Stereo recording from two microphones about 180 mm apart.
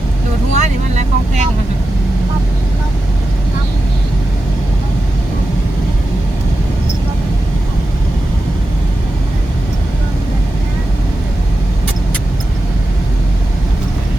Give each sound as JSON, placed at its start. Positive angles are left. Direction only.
{"t": 0.5, "sound": "vehicle", "side_deg": -40}